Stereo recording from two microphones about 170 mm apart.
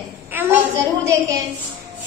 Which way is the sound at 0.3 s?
10° right (ahead or behind).